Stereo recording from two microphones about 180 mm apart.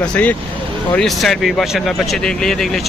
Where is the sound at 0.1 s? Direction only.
10° left (ahead or behind).